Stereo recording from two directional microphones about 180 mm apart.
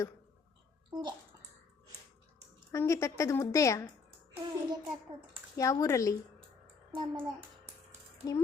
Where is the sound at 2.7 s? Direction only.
15° left (ahead or behind).